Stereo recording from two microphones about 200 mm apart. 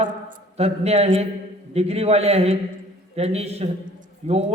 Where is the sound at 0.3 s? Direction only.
30° right (ahead or behind).